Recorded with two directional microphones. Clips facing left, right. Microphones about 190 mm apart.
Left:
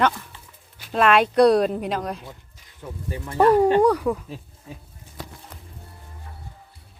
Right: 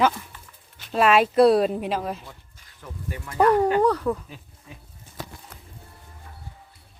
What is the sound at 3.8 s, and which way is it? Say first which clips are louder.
Speech: left 2 dB; 10° left (ahead or behind).